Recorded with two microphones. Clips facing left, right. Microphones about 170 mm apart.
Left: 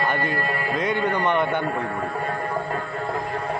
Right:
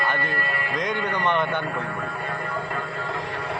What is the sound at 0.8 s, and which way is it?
Speech, 10° left (ahead or behind).